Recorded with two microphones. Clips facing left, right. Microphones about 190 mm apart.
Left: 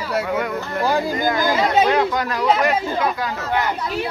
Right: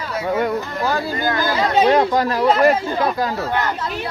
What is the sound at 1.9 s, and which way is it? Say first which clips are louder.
Speech: right 3 dB; 35° right (ahead or behind).